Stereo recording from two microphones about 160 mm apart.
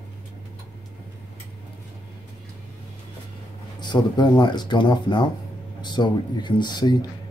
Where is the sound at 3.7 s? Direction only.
25° left (ahead or behind).